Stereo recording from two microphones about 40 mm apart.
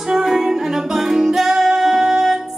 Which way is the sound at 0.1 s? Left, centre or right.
Centre.